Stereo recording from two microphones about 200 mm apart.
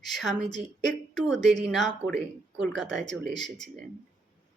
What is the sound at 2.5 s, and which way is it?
Speech, 65° right (ahead or behind).